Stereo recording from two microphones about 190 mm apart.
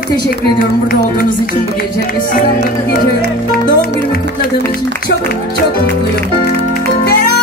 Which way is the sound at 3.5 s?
55° left (ahead or behind).